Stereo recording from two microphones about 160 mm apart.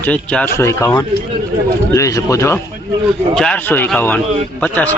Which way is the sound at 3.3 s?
5° left (ahead or behind).